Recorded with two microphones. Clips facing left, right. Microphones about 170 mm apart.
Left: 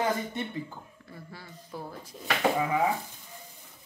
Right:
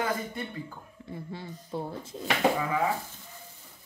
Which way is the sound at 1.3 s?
25° right (ahead or behind).